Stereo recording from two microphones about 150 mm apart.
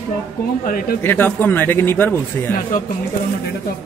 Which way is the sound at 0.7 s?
80° left.